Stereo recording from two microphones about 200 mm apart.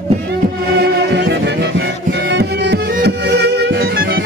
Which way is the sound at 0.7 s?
60° right (ahead or behind).